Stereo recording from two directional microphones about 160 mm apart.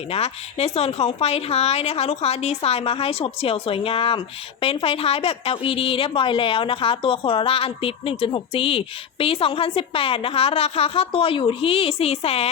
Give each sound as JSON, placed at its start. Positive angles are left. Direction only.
{"t": 0.1, "sound": "a woman's voice", "side_deg": 40}